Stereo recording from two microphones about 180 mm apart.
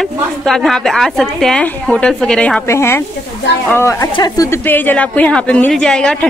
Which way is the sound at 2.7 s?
15° left (ahead or behind).